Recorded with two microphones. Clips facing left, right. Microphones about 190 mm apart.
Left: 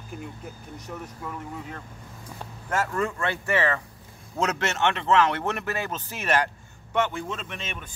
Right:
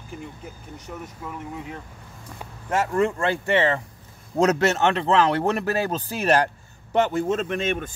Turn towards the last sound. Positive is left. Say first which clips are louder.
# right 12 dB
turn(degrees=-50)  # may be behind; listen again after turning